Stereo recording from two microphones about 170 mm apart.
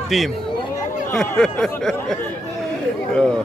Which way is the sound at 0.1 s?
Centre (ahead or behind).